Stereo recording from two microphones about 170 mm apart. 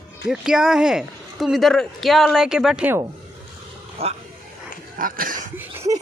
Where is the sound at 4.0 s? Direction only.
35° right (ahead or behind).